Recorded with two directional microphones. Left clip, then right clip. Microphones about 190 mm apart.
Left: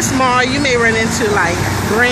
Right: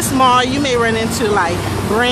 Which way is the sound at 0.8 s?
5° right (ahead or behind).